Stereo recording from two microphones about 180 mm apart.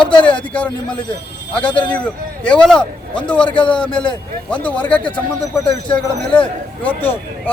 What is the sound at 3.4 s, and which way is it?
Speech, 25° left (ahead or behind).